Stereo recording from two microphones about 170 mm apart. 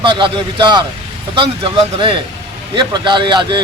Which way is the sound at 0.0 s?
30° right (ahead or behind).